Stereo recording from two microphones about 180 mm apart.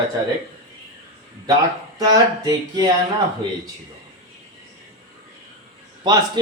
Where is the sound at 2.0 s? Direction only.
20° right (ahead or behind).